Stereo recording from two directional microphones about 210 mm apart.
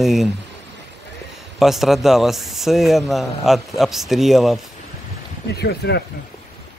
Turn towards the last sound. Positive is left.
turn(degrees=50)  # may be behind; listen again after turning